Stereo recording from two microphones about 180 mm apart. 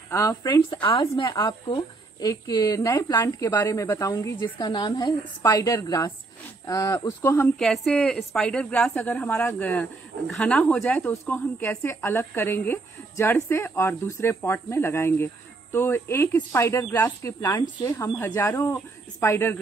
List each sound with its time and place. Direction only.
0.1 s speech: 15° left (ahead or behind)
7.5 s speech: centre (ahead or behind)